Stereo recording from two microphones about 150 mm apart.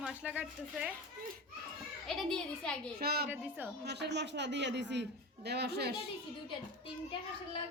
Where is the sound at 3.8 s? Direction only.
90° right.